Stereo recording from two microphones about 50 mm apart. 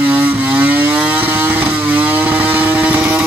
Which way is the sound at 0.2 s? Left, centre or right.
Right.